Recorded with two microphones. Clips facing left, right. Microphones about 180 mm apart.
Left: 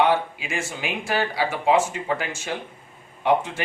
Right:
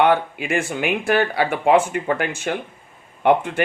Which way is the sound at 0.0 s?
60° right (ahead or behind).